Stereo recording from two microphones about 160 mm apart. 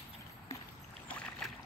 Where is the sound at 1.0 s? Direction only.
5° left (ahead or behind).